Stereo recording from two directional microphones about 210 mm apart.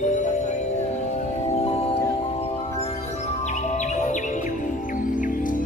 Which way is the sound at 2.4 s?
30° left (ahead or behind).